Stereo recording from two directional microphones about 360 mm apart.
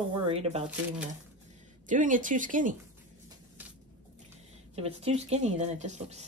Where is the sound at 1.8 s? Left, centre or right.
Right.